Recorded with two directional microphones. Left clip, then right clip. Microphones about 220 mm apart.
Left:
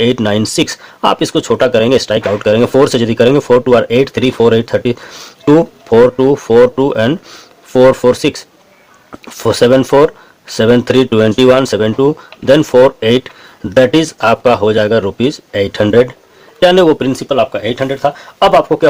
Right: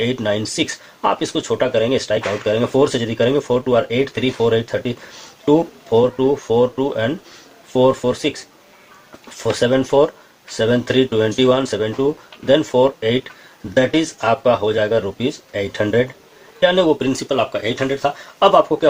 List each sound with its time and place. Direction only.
0.0 s speech: 45° left (ahead or behind)
9.4 s speech: 45° left (ahead or behind)